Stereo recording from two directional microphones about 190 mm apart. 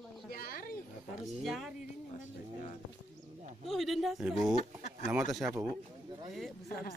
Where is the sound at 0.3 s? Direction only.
50° left (ahead or behind).